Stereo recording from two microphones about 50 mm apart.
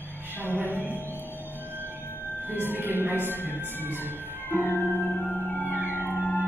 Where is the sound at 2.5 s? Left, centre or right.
Right.